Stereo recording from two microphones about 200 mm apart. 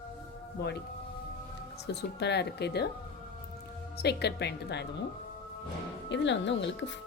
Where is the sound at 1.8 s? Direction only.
55° left (ahead or behind).